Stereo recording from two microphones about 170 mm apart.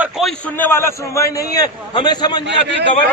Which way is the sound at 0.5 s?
10° left (ahead or behind).